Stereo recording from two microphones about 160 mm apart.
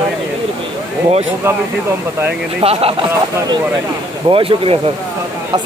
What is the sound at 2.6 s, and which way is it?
Speech, 40° right (ahead or behind).